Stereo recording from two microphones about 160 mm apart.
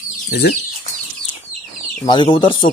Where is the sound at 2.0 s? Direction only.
30° left (ahead or behind).